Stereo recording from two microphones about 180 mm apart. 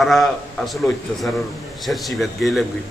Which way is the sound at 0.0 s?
Centre (ahead or behind).